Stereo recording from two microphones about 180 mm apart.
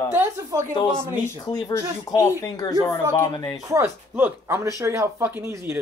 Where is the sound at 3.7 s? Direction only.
15° right (ahead or behind).